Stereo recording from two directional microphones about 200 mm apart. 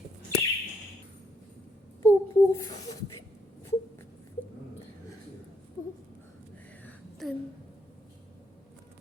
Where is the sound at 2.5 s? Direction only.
15° left (ahead or behind).